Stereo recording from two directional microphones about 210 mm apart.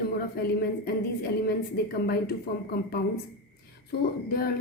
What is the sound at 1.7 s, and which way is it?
A woman's voice, 50° left (ahead or behind).